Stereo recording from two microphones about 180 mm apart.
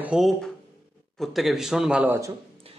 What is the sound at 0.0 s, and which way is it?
A man's voice, centre (ahead or behind).